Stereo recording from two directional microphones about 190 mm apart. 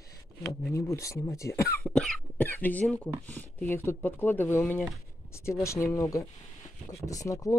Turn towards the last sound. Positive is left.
turn(degrees=15)  # may be behind; listen again after turning